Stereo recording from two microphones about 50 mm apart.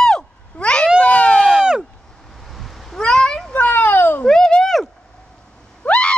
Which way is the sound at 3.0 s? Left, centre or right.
Centre.